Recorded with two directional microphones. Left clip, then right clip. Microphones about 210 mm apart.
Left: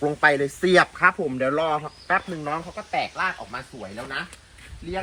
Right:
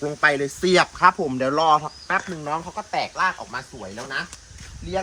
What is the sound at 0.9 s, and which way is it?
Speech, 25° right (ahead or behind).